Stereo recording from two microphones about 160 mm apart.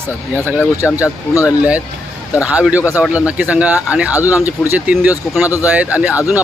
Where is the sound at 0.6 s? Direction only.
15° left (ahead or behind).